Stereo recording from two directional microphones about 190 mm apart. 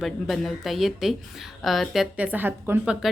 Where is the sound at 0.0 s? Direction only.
Centre (ahead or behind).